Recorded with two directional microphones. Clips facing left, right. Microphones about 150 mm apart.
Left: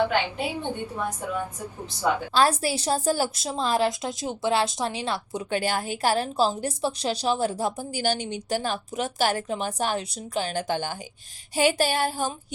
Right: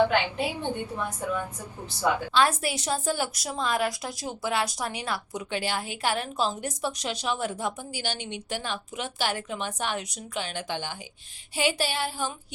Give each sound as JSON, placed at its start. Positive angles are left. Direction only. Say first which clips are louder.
{"t": 0.5, "sound": "a woman's voice", "louder": "left 1 dB", "side_deg": 10}
{"t": 2.3, "sound": "a woman's voice", "louder": "left 2 dB", "side_deg": 35}
{"t": 3.3, "sound": "a woman's voice", "louder": "left 3 dB", "side_deg": 25}
{"t": 5.5, "sound": "a woman's voice", "louder": "left 5 dB", "side_deg": 45}
{"t": 11.5, "sound": "a sound", "louder": "left 5 dB", "side_deg": 45}